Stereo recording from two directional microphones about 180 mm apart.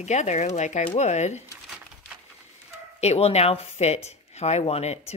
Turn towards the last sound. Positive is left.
turn(degrees=35)  # may be behind; listen again after turning